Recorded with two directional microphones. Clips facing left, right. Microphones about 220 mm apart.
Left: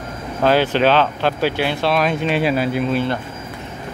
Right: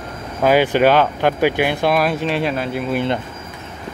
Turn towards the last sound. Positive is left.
turn(degrees=-15)  # may be behind; listen again after turning